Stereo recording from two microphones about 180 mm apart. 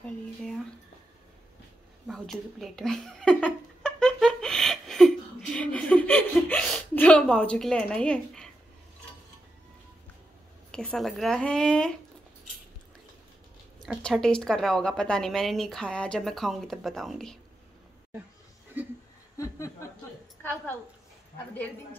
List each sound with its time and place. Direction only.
2.0 s a sound: centre (ahead or behind)
10.7 s a woman's voice: 5° left (ahead or behind)
13.8 s a woman's voice: centre (ahead or behind)
19.3 s chuckle: 15° left (ahead or behind)